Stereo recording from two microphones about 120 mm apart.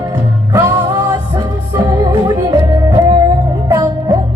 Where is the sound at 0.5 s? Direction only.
20° right (ahead or behind).